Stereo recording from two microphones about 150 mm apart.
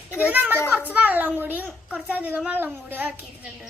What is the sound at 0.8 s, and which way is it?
A child's voice, 10° right (ahead or behind).